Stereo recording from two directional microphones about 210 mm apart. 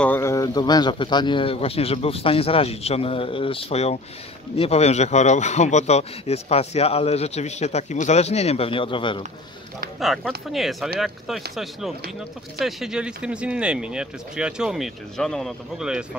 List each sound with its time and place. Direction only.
0.0 s a man's voice: 10° left (ahead or behind)
9.9 s speech: centre (ahead or behind)